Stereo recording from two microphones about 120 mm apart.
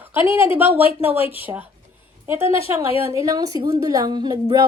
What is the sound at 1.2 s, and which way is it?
Speech, 50° left (ahead or behind).